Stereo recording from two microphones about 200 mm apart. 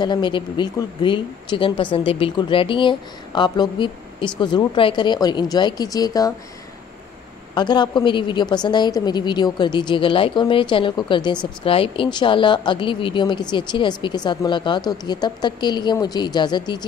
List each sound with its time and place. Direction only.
0.0 s speech: 25° left (ahead or behind)
7.5 s speech: 20° left (ahead or behind)